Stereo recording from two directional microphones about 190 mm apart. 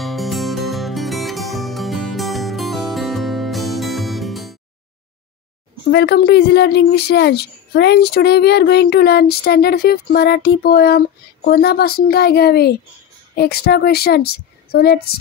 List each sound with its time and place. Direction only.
0.0 s music: centre (ahead or behind)
5.9 s speech: 60° left (ahead or behind)